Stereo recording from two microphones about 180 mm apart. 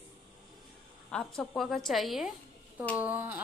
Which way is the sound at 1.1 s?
Centre (ahead or behind).